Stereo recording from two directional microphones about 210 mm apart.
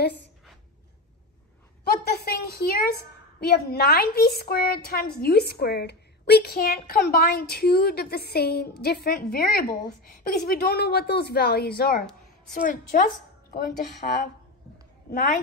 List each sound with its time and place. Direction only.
1.9 s a woman's voice: 50° left (ahead or behind)
15.1 s a woman's voice: 50° left (ahead or behind)